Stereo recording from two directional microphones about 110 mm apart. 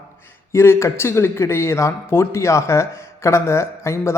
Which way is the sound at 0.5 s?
25° left (ahead or behind).